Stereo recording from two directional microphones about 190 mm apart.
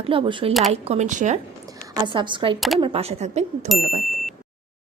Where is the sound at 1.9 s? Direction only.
25° right (ahead or behind).